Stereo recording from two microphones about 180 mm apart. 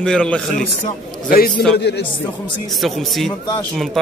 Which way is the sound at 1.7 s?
70° left (ahead or behind).